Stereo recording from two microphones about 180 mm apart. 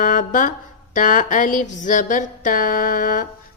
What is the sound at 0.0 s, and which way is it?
Mantra, 45° left (ahead or behind).